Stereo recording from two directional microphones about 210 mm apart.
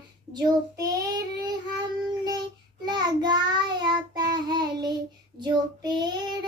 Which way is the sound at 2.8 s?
20° right (ahead or behind).